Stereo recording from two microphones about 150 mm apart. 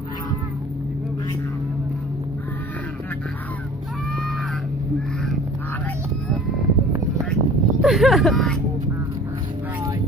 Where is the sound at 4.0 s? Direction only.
5° left (ahead or behind).